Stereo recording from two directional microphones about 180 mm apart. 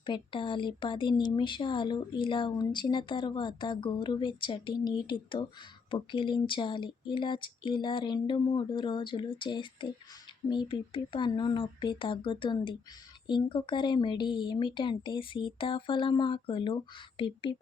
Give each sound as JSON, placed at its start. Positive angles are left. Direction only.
{"t": 0.0, "sound": "speech", "side_deg": 25}